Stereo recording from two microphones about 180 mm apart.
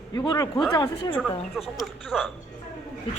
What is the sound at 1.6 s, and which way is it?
Speech, centre (ahead or behind).